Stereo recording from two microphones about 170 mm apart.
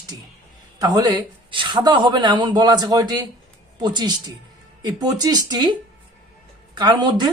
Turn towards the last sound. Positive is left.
turn(degrees=-25)  # may be behind; listen again after turning